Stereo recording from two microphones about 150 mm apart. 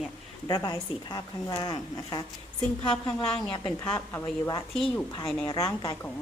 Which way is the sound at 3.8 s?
15° left (ahead or behind).